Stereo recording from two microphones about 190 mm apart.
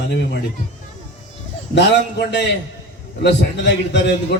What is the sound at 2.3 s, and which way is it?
A man's voice, 65° left (ahead or behind).